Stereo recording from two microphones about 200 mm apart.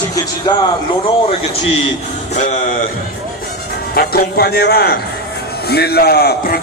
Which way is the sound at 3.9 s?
50° left (ahead or behind).